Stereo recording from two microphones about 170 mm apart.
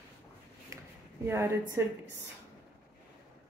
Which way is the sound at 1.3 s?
15° right (ahead or behind).